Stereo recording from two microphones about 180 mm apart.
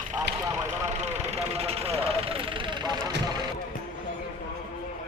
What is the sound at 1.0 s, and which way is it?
Vehicle, 40° right (ahead or behind).